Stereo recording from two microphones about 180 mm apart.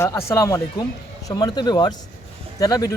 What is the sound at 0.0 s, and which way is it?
Speech, 15° left (ahead or behind).